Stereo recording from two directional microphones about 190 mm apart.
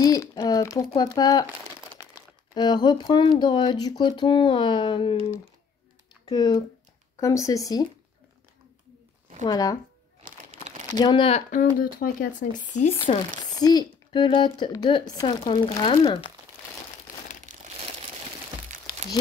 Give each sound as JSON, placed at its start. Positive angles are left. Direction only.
{"t": 0.0, "sound": "speech", "side_deg": 20}
{"t": 2.5, "sound": "speech", "side_deg": 25}
{"t": 6.2, "sound": "speech", "side_deg": 20}
{"t": 9.4, "sound": "speech", "side_deg": 20}
{"t": 11.0, "sound": "speech", "side_deg": 25}
{"t": 11.5, "sound": "speech", "side_deg": 50}
{"t": 13.4, "sound": "speech", "side_deg": 20}